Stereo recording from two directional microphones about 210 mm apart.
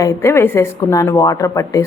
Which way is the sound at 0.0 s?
15° left (ahead or behind).